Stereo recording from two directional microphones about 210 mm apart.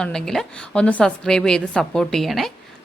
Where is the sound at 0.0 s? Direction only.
5° left (ahead or behind).